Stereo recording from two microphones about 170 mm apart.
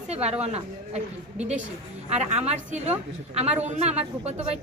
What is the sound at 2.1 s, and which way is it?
A woman's voice, 40° right (ahead or behind).